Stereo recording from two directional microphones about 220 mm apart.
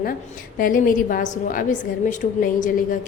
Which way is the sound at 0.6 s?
40° left (ahead or behind).